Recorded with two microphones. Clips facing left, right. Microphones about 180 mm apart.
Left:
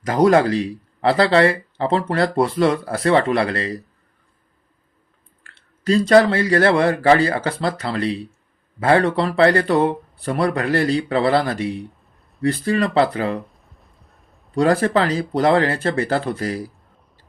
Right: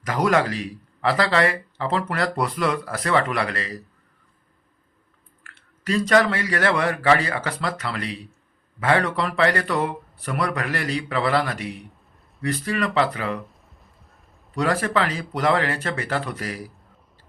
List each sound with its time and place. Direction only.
0.0 s speech: 30° left (ahead or behind)
5.4 s speech: 30° left (ahead or behind)
13.4 s a sound: centre (ahead or behind)
14.5 s speech: 30° left (ahead or behind)